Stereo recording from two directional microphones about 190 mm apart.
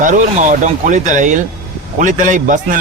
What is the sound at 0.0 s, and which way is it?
Speech, 40° right (ahead or behind).